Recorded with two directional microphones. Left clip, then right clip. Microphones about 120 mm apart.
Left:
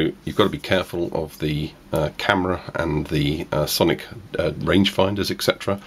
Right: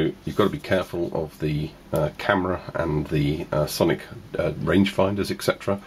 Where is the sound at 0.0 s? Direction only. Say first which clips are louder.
Left 2 dB; 30° left (ahead or behind).